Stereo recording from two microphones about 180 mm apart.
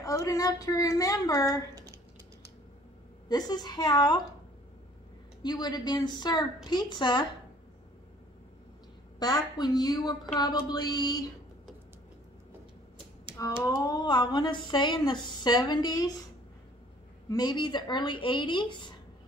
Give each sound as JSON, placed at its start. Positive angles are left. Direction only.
{"t": 0.0, "sound": "speech", "side_deg": 20}
{"t": 3.3, "sound": "speech", "side_deg": 20}
{"t": 5.4, "sound": "speech", "side_deg": 25}
{"t": 9.2, "sound": "speech", "side_deg": 20}
{"t": 13.7, "sound": "speech", "side_deg": 20}
{"t": 17.3, "sound": "speech", "side_deg": 25}